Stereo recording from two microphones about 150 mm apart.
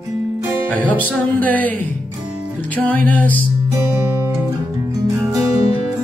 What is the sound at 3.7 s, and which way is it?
Music, 20° right (ahead or behind).